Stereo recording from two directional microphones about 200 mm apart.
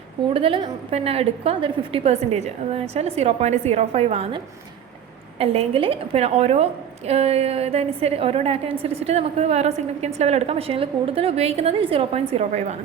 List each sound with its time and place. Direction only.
0.3 s a woman's voice: 25° right (ahead or behind)
5.4 s a woman's voice: 30° right (ahead or behind)